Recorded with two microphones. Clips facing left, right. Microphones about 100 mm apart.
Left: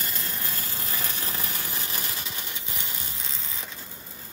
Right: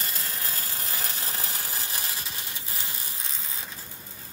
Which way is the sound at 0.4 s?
30° right (ahead or behind).